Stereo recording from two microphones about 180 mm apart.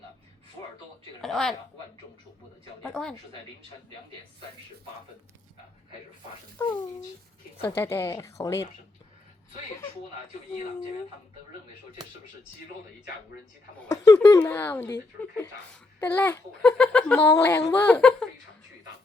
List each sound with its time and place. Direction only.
1.2 s a sound: centre (ahead or behind)
2.8 s a woman's voice: 5° left (ahead or behind)
6.6 s a woman's voice: 15° left (ahead or behind)
7.8 s a woman's voice: 15° left (ahead or behind)
13.8 s a woman's voice: 15° left (ahead or behind)